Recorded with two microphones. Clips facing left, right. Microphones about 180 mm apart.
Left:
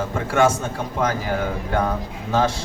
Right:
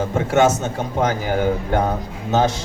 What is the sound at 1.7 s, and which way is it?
Speech, 20° right (ahead or behind).